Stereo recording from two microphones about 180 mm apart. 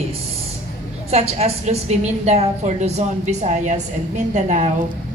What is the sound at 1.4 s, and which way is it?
A woman's voice, 35° right (ahead or behind).